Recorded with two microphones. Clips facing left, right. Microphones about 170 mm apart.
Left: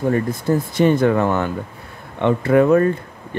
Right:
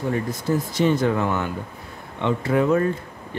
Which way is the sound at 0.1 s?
55° left (ahead or behind).